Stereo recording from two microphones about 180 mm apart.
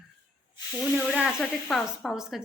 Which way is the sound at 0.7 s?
5° right (ahead or behind).